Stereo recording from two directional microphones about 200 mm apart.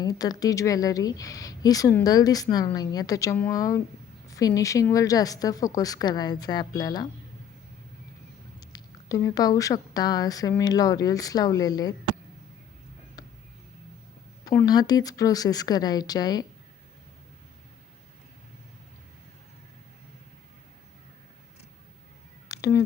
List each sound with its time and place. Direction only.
0.0 s a woman's voice: 20° left (ahead or behind)
8.7 s a woman's voice: 15° left (ahead or behind)
14.4 s speech: 15° left (ahead or behind)
22.4 s a sound: 15° left (ahead or behind)